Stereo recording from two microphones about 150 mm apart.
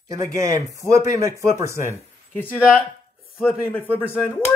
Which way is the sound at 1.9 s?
15° left (ahead or behind).